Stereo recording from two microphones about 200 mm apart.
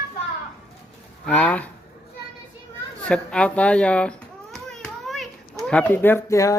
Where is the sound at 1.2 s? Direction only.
5° left (ahead or behind).